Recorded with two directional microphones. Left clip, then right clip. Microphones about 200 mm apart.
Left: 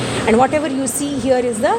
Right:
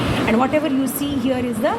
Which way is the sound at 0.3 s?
40° left (ahead or behind).